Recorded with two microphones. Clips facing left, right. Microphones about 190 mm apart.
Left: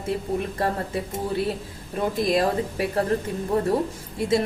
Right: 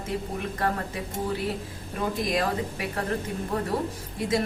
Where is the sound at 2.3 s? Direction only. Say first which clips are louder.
Left 5 dB; 30° left (ahead or behind).